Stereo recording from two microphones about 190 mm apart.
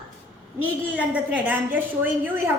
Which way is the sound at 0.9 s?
5° right (ahead or behind).